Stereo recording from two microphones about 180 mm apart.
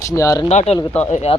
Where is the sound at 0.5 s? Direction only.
35° left (ahead or behind).